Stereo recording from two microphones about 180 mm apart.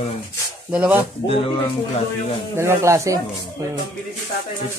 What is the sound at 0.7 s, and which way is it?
Speech, 5° right (ahead or behind).